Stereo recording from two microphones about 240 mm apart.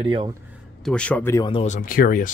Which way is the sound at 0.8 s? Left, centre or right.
Centre.